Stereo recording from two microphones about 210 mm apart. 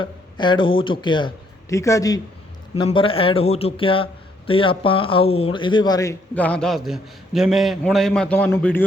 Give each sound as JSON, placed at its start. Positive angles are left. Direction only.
{"t": 0.0, "sound": "a man's voice", "side_deg": 20}